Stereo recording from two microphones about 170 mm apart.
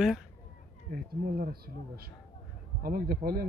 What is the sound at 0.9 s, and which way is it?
Speech, 60° right (ahead or behind).